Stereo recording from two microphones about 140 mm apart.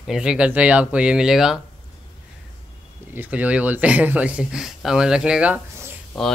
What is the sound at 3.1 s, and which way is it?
Speech, 10° right (ahead or behind).